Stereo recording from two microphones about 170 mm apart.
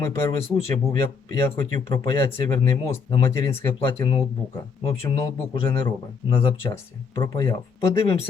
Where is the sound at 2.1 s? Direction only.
15° left (ahead or behind).